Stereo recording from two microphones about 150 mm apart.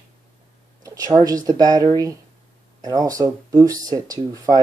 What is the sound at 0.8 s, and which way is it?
Speech, 25° right (ahead or behind).